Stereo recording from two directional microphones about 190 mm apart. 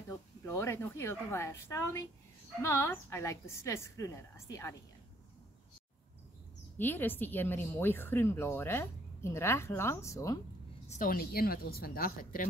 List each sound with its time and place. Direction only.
0.5 s speech: 15° left (ahead or behind)
6.8 s speech: 10° left (ahead or behind)
10.9 s a woman's voice: 45° left (ahead or behind)